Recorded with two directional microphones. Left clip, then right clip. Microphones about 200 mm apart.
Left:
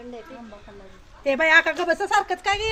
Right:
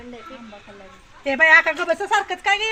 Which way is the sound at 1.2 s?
30° left (ahead or behind).